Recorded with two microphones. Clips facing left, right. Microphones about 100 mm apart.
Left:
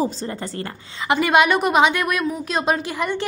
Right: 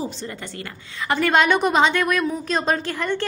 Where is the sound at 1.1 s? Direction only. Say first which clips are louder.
Left 2 dB; 15° left (ahead or behind).